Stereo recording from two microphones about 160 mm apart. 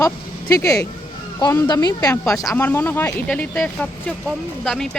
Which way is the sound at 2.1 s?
10° left (ahead or behind).